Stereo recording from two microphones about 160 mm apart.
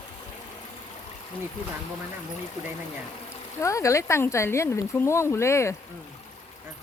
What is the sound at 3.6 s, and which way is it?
Speech, 20° left (ahead or behind).